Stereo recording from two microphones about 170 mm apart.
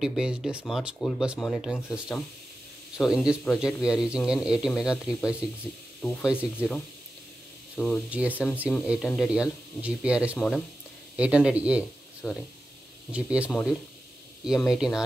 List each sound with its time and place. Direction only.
0.0 s speech: 5° right (ahead or behind)
5.9 s speech: 5° left (ahead or behind)
7.8 s speech: centre (ahead or behind)
10.3 s speech: 5° left (ahead or behind)
11.1 s speech: 5° right (ahead or behind)
12.2 s speech: 5° left (ahead or behind)
13.1 s speech: 5° right (ahead or behind)